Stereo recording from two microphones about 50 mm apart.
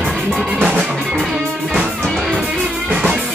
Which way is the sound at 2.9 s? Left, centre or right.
Centre.